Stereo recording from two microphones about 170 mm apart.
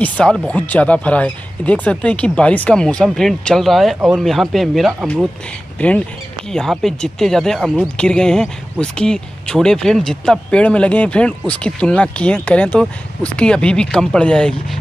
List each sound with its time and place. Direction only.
0.0 s speech: 5° left (ahead or behind)